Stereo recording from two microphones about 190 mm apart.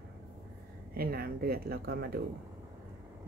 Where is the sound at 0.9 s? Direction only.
50° right (ahead or behind).